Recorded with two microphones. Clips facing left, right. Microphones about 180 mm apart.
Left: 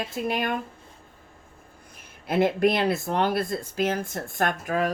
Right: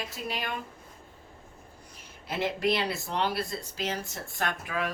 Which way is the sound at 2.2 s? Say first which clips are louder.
Left 7 dB; 55° left (ahead or behind).